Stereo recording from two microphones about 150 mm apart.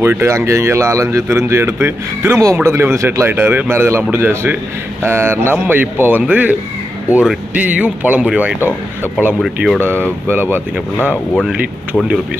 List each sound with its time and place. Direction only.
0.0 s speech: 15° right (ahead or behind); by 9.8 s centre (ahead or behind)
10.2 s speech: 15° right (ahead or behind)
11.0 s speech: 10° left (ahead or behind)
11.4 s speech: 5° right (ahead or behind)